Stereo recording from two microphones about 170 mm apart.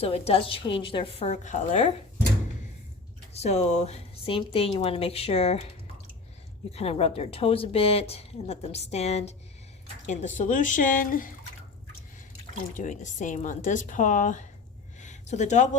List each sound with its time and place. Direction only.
0.0 s a woman's voice: 35° left (ahead or behind)
3.4 s a woman's voice: 40° left (ahead or behind)
6.7 s a woman's voice: 35° left (ahead or behind); by 11.3 s 55° left (ahead or behind)
12.7 s speech: 50° left (ahead or behind)
15.0 s a sound: 45° left (ahead or behind)